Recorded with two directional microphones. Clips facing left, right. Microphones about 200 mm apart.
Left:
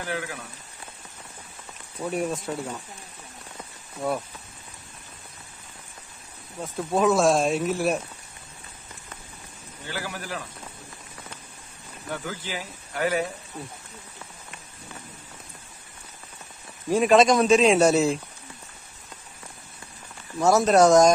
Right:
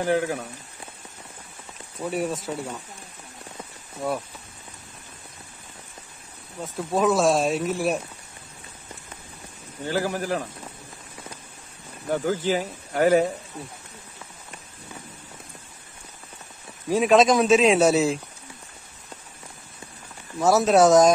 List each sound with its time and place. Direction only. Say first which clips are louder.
0.0 s speech: right 9 dB; 45° right (ahead or behind)
2.0 s speech: right 1 dB; 5° right (ahead or behind)
6.6 s speech: even; centre (ahead or behind)
9.8 s speech: right 9 dB; 40° right (ahead or behind)
12.1 s speech: right 10 dB; 45° right (ahead or behind)
16.9 s speech: even; centre (ahead or behind)
20.3 s speech: even; centre (ahead or behind)